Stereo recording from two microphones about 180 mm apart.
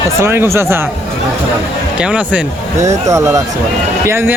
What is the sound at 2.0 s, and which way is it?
Speech, 5° right (ahead or behind).